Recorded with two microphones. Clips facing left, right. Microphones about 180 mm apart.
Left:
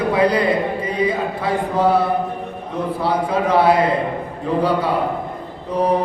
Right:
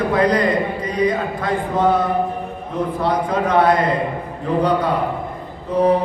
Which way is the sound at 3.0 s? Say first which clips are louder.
Left 1 dB; 10° left (ahead or behind).